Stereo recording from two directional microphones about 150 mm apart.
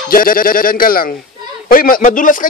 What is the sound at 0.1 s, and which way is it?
Speech, 75° left (ahead or behind).